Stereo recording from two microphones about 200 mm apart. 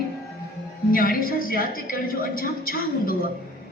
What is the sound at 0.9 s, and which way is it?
A woman's voice, 45° left (ahead or behind).